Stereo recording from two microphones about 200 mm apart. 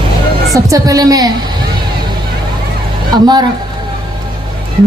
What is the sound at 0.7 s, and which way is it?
Speech, 15° right (ahead or behind).